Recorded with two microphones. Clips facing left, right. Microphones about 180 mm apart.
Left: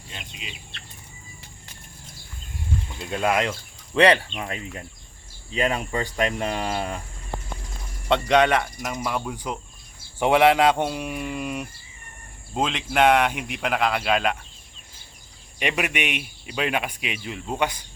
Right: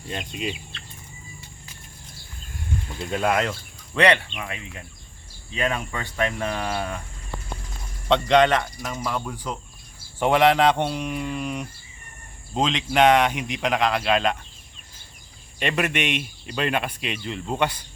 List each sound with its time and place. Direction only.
0.1 s speech: 50° right (ahead or behind)
2.9 s speech: centre (ahead or behind)
3.9 s speech: 30° left (ahead or behind)
8.0 s speech: 5° left (ahead or behind)
15.5 s speech: 10° left (ahead or behind)